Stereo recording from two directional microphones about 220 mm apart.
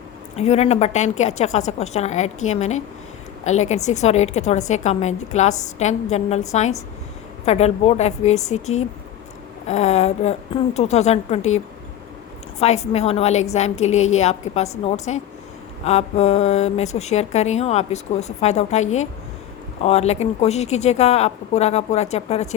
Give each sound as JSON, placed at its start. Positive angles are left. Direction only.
{"t": 0.3, "sound": "a woman's voice", "side_deg": 30}